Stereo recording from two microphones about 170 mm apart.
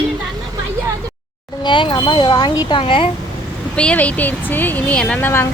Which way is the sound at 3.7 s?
5° left (ahead or behind).